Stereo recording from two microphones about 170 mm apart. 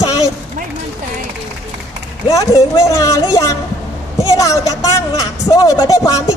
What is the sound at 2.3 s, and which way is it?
A woman's voice, 20° left (ahead or behind).